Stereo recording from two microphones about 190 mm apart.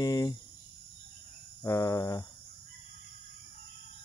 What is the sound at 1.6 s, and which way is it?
Speech, 15° left (ahead or behind).